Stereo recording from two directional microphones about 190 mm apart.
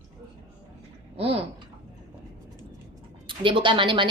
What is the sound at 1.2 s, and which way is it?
Speech, 30° right (ahead or behind).